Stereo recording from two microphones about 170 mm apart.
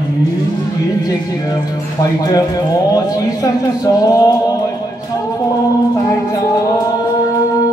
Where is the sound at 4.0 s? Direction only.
20° left (ahead or behind).